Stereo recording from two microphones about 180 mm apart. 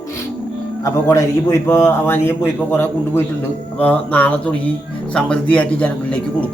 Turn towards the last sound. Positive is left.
turn(degrees=5)  # may be behind; listen again after turning